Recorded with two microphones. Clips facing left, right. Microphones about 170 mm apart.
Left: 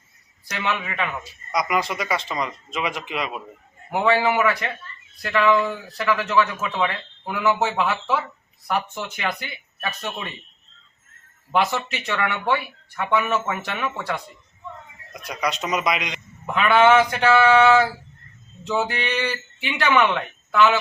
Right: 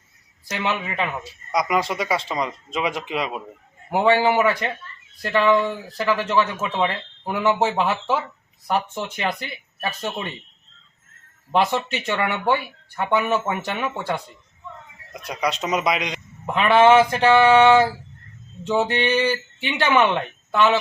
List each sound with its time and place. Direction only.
0.4 s a man's voice: 25° right (ahead or behind)
11.5 s a man's voice: 30° right (ahead or behind)